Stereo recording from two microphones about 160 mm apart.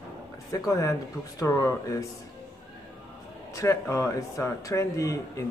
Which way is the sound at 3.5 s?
20° left (ahead or behind).